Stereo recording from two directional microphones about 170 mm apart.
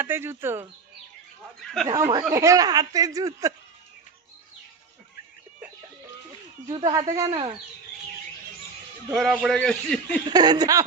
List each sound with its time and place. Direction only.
0.0 s speech: 15° right (ahead or behind)
1.6 s a man's voice: centre (ahead or behind)
1.9 s speech: 20° right (ahead or behind)
6.7 s speech: 20° right (ahead or behind)
9.1 s a man's voice: centre (ahead or behind)
10.2 s speech: 25° right (ahead or behind)